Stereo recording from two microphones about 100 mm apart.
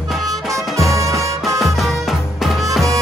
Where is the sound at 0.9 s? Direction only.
30° right (ahead or behind).